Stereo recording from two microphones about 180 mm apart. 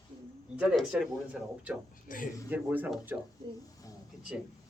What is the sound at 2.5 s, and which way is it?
Speech, 10° right (ahead or behind).